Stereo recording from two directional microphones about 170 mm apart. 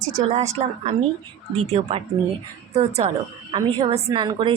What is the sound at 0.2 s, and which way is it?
Speech, 40° right (ahead or behind).